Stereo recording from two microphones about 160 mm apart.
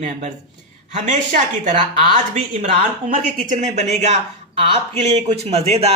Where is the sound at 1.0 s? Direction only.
55° right (ahead or behind).